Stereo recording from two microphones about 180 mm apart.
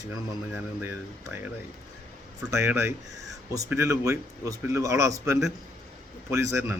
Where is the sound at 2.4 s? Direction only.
15° right (ahead or behind).